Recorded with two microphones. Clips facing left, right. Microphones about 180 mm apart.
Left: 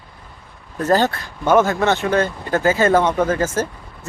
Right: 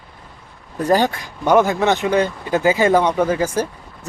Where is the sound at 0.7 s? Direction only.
15° right (ahead or behind).